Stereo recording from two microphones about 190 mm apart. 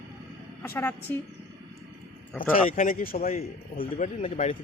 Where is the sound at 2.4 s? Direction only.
45° left (ahead or behind).